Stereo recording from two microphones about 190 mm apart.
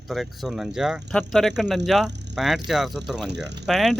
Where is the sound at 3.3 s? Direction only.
65° right (ahead or behind).